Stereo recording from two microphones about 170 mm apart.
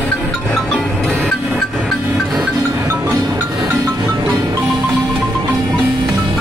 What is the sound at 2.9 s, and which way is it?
Music, 15° right (ahead or behind).